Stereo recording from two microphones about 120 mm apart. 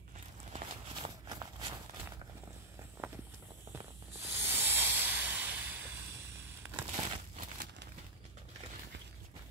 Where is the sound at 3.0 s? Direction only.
20° right (ahead or behind).